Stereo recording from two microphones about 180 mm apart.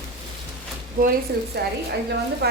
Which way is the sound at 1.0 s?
50° right (ahead or behind).